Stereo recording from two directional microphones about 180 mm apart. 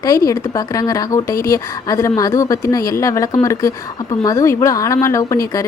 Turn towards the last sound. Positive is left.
turn(degrees=15)  # may be behind; listen again after turning